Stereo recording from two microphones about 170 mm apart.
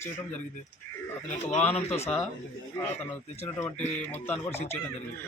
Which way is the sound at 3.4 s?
10° left (ahead or behind).